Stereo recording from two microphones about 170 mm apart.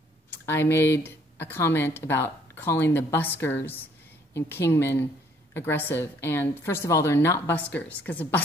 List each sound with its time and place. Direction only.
0.3 s speech: 15° left (ahead or behind)